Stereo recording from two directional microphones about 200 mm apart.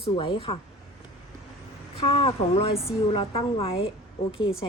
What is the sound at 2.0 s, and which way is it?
A woman's voice, 30° left (ahead or behind).